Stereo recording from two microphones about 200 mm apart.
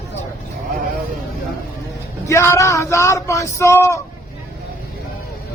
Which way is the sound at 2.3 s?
15° left (ahead or behind).